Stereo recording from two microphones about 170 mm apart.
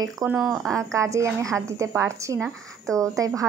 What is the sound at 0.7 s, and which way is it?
Speech, 20° right (ahead or behind).